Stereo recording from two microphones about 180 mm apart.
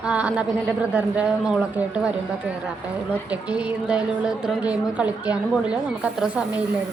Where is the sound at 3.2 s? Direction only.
5° right (ahead or behind).